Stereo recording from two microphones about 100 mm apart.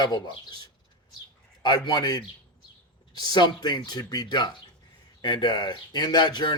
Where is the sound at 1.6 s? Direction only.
45° left (ahead or behind).